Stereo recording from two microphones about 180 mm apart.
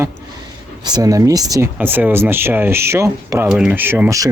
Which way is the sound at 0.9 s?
20° right (ahead or behind).